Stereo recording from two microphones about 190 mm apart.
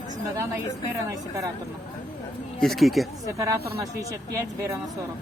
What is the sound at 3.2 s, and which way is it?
Speech, 15° right (ahead or behind).